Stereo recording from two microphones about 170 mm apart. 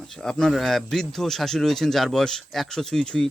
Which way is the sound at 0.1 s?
5° left (ahead or behind).